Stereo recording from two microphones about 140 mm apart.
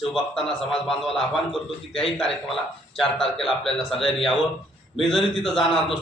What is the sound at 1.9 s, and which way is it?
Speech, 40° left (ahead or behind).